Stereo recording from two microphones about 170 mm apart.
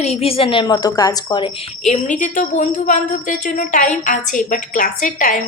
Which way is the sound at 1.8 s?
45° left (ahead or behind).